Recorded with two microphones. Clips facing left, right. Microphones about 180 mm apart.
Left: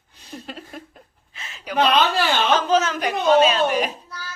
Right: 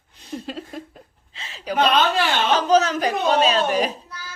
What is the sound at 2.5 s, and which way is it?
Speech, 40° right (ahead or behind).